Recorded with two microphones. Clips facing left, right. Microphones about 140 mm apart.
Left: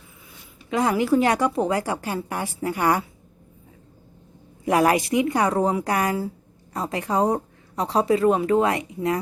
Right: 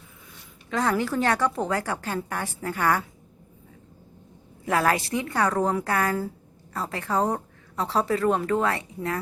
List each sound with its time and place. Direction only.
0.7 s speech: 10° left (ahead or behind)
4.6 s speech: 15° left (ahead or behind)